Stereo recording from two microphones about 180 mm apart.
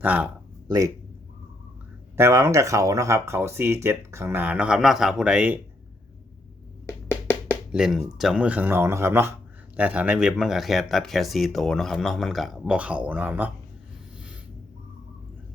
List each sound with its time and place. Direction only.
0.0 s speech: 10° right (ahead or behind)
2.1 s speech: 15° right (ahead or behind)
6.8 s a sound: 15° left (ahead or behind)
7.7 s speech: 5° right (ahead or behind)